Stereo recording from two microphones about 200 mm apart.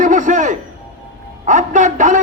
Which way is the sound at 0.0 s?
40° right (ahead or behind).